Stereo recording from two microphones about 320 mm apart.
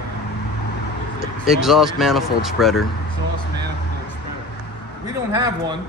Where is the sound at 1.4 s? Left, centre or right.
Centre.